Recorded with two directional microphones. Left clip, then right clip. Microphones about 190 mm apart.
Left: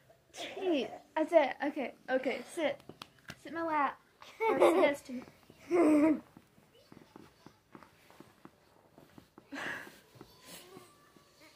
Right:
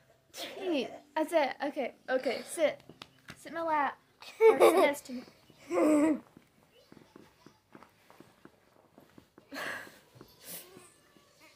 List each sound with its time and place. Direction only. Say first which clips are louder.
0.3 s a child's voice: left 1 dB; 25° right (ahead or behind)
2.9 s a sound: left 1 dB; 50° left (ahead or behind)
3.4 s a child's voice: right 2 dB; 35° right (ahead or behind)
4.2 s laughter: right 6 dB; 50° right (ahead or behind)
4.8 s a child's voice: right 1 dB; 35° right (ahead or behind)
5.7 s babbling: even; 30° right (ahead or behind)
9.5 s a sound: right 1 dB; 35° right (ahead or behind)